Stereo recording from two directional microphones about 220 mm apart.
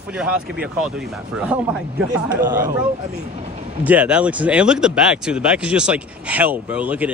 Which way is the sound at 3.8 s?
5° right (ahead or behind).